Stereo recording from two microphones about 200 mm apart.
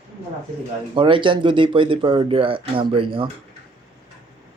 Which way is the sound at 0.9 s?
25° right (ahead or behind).